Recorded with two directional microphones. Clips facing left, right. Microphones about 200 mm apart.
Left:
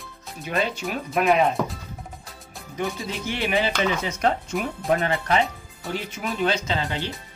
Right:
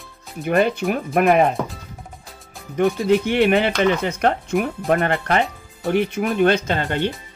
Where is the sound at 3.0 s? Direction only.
60° right (ahead or behind).